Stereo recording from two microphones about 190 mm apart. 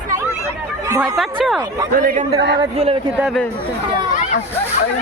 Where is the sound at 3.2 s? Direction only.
Centre (ahead or behind).